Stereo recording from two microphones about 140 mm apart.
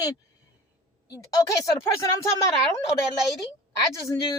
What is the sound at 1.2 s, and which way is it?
A woman's voice, 25° left (ahead or behind).